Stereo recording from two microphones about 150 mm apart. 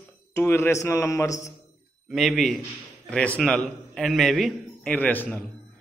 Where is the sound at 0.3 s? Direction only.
15° left (ahead or behind).